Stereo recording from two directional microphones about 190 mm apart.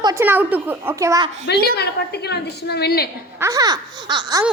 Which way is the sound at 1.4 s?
60° left (ahead or behind).